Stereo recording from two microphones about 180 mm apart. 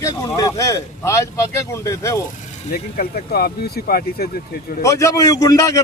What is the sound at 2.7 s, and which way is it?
Speech, 60° left (ahead or behind).